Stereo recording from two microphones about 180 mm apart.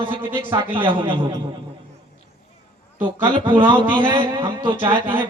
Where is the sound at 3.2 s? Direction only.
25° right (ahead or behind).